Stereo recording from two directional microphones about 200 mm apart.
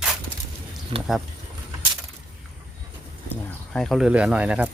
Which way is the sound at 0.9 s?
25° right (ahead or behind).